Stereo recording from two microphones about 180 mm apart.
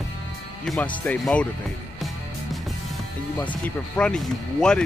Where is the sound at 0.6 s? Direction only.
5° left (ahead or behind).